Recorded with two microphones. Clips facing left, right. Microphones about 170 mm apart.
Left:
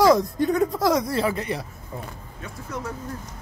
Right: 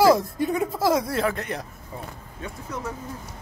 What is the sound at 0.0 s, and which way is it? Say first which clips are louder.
Speech: left 1 dB; 5° right (ahead or behind).